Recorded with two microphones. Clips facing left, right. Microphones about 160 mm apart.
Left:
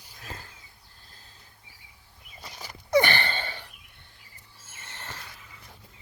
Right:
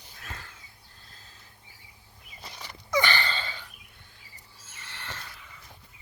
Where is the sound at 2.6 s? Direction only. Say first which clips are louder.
Left 1 dB; 40° left (ahead or behind).